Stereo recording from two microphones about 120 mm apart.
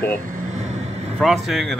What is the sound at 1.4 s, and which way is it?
Speech, centre (ahead or behind).